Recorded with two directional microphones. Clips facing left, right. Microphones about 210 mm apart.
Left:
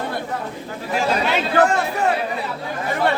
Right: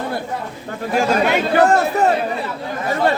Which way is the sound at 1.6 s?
40° right (ahead or behind).